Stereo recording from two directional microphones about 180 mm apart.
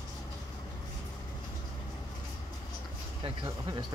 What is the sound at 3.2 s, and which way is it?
Speech, 25° right (ahead or behind).